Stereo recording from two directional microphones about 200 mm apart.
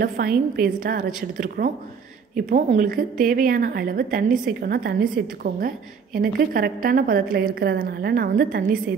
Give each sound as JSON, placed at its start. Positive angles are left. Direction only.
{"t": 0.0, "sound": "a woman's voice", "side_deg": -45}